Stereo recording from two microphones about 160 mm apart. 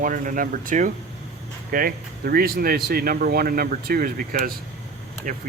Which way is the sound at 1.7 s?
65° right (ahead or behind).